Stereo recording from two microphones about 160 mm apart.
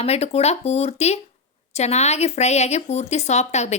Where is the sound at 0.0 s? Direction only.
40° left (ahead or behind).